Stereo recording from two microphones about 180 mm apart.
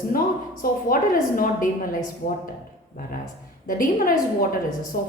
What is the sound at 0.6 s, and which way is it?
A woman's voice, 55° left (ahead or behind).